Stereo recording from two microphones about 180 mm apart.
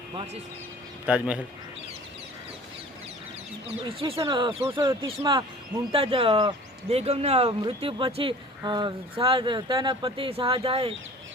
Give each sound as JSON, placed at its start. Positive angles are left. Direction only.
{"t": 1.0, "sound": "a man's voice", "side_deg": -5}
{"t": 3.8, "sound": "speech", "side_deg": -30}